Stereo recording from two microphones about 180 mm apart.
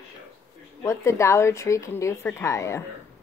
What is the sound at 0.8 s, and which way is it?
A woman's voice, 15° left (ahead or behind).